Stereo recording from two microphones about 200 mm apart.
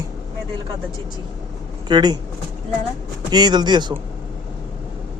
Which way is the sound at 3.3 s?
20° right (ahead or behind).